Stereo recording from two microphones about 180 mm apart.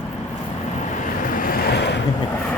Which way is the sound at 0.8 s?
45° left (ahead or behind).